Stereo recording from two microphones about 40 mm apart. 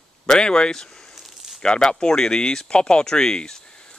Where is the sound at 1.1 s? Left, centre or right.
Centre.